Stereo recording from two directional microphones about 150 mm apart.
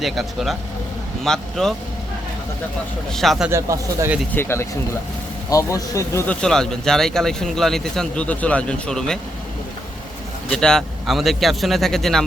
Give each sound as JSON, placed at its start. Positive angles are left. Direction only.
{"t": 0.0, "sound": "speech", "side_deg": 0}
{"t": 3.1, "sound": "speech", "side_deg": 0}
{"t": 3.5, "sound": "speech", "side_deg": -15}
{"t": 4.4, "sound": "speech", "side_deg": 15}
{"t": 6.4, "sound": "speech", "side_deg": 5}
{"t": 10.5, "sound": "speech", "side_deg": 5}